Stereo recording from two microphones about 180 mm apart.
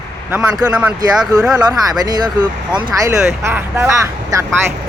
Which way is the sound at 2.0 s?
20° right (ahead or behind).